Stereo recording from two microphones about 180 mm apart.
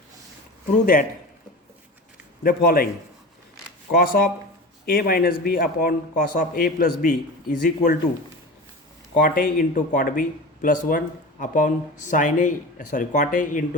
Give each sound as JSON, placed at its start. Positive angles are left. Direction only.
{"t": 2.4, "sound": "a man's voice", "side_deg": 55}
{"t": 3.9, "sound": "a man's voice", "side_deg": 55}
{"t": 9.2, "sound": "speech", "side_deg": 50}